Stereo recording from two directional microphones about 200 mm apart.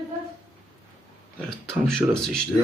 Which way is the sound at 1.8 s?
5° left (ahead or behind).